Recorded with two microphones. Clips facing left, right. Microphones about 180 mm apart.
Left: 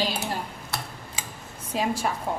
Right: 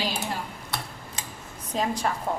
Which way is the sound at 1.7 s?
5° left (ahead or behind).